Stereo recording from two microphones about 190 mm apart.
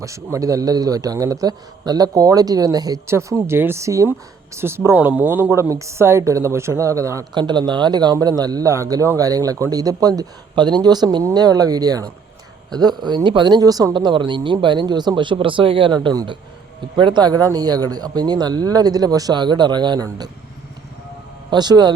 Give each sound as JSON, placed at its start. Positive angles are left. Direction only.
{"t": 0.0, "sound": "a man's voice", "side_deg": -15}
{"t": 21.5, "sound": "a man's voice", "side_deg": -20}